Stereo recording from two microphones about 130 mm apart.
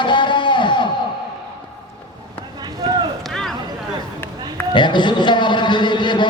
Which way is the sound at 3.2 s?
5° left (ahead or behind).